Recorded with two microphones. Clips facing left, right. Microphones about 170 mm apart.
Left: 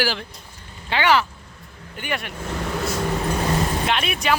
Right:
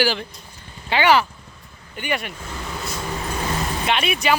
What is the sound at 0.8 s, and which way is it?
Speech, 10° right (ahead or behind).